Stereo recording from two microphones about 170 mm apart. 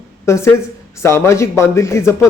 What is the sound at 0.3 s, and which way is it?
Speech, 15° left (ahead or behind).